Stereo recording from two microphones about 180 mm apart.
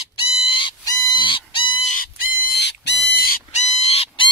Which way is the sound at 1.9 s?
55° left (ahead or behind).